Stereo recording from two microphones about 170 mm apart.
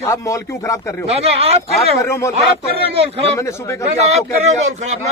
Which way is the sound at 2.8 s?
35° right (ahead or behind).